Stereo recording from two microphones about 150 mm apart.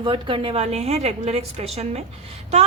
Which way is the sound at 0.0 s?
35° right (ahead or behind).